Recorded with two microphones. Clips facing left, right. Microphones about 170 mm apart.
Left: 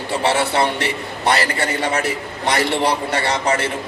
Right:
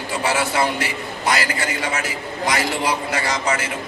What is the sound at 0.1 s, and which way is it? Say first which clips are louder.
A man's voice: left 3 dB; 30° left (ahead or behind).